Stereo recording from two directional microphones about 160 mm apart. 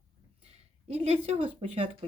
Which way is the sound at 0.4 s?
40° right (ahead or behind).